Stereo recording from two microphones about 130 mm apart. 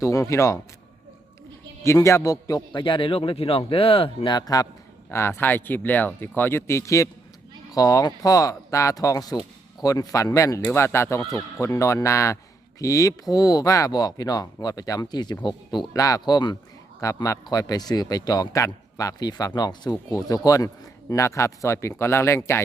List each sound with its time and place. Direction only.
0.0 s a man's voice: 25° left (ahead or behind)
1.8 s a man's voice: 20° left (ahead or behind)